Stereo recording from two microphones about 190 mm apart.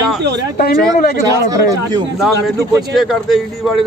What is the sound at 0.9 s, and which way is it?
Speech, 50° left (ahead or behind).